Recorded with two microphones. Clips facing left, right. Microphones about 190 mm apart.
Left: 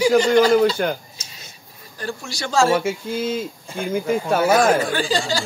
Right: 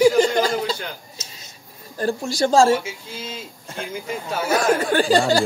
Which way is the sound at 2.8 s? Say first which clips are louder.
Left 10 dB; 55° left (ahead or behind).